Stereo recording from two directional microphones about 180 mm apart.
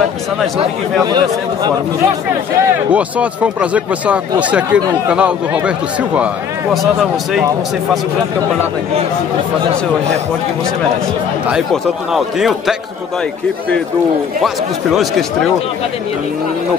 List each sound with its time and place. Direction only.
0.6 s speech: 25° right (ahead or behind)
2.9 s speech: 5° right (ahead or behind)
11.4 s speech: 5° right (ahead or behind)
14.4 s speech: centre (ahead or behind)